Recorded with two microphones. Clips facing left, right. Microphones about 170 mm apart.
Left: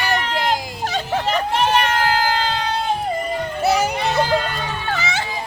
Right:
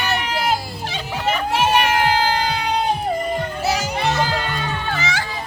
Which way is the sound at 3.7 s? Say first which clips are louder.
Left 6 dB; 60° left (ahead or behind).